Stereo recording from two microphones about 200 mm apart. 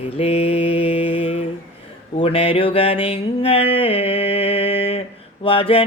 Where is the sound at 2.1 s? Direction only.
30° left (ahead or behind).